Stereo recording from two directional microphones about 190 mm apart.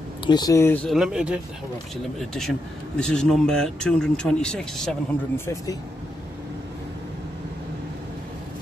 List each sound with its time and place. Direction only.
0.3 s speech: 20° left (ahead or behind)
0.8 s speech: centre (ahead or behind)